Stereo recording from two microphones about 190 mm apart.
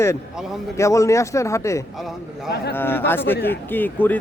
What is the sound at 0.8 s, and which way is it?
A man's voice, 15° left (ahead or behind).